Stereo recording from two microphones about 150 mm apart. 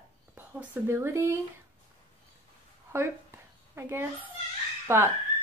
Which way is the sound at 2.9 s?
15° right (ahead or behind).